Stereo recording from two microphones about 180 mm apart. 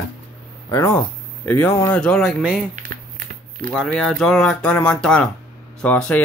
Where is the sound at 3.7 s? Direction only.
Centre (ahead or behind).